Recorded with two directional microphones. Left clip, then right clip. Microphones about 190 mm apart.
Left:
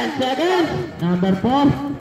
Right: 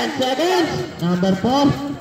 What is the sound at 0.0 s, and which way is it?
Speech, 25° right (ahead or behind).